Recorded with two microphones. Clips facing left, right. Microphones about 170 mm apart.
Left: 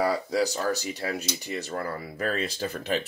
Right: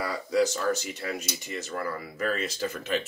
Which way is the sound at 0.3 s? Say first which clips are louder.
Right 1 dB; 35° left (ahead or behind).